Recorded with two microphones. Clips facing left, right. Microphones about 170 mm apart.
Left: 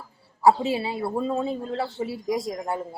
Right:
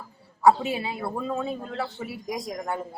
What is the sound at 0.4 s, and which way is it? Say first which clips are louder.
A man's voice: left 1 dB; 30° left (ahead or behind).